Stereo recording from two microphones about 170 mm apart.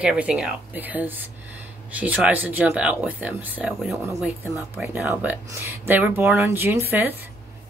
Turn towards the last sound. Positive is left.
turn(degrees=-10)  # may be behind; listen again after turning